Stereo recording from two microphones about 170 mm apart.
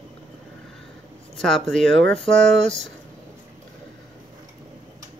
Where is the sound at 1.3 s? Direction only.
Centre (ahead or behind).